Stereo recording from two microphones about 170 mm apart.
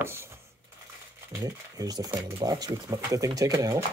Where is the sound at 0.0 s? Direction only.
15° right (ahead or behind).